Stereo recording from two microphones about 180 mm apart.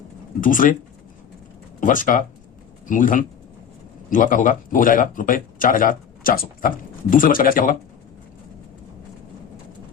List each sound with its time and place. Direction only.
0.4 s speech: 50° left (ahead or behind)
1.8 s speech: 45° left (ahead or behind)